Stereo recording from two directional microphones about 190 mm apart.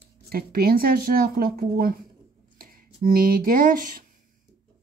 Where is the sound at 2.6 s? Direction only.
50° right (ahead or behind).